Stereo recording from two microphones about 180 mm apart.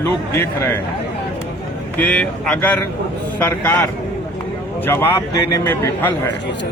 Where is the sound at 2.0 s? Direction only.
5° left (ahead or behind).